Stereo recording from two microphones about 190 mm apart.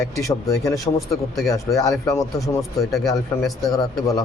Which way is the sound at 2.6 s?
Centre (ahead or behind).